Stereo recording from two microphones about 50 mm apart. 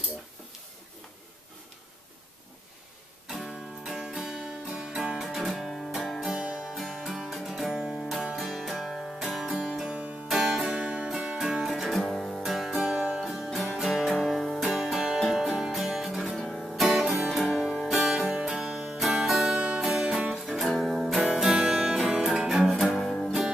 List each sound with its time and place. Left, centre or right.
3.8 s music: centre
6.3 s music: centre
6.7 s music: centre
9.8 s music: right
10.2 s music: centre
16.3 s music: centre
16.6 s music: centre
20.8 s music: centre
22.9 s music: centre